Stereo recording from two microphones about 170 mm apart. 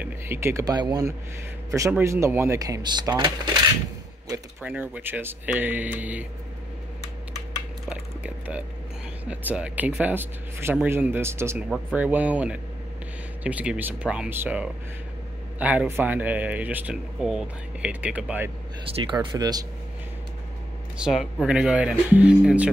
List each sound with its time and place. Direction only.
0.0 s speech: 15° right (ahead or behind)
4.6 s speech: 10° right (ahead or behind)
7.9 s a sound: 10° right (ahead or behind)
9.2 s speech: 10° right (ahead or behind)
18.9 s speech: 25° right (ahead or behind)
21.0 s speech: centre (ahead or behind)